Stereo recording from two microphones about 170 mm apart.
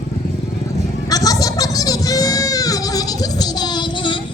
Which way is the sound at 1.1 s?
20° left (ahead or behind).